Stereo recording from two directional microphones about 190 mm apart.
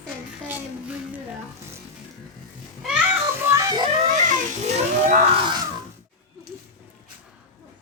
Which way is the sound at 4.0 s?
40° right (ahead or behind).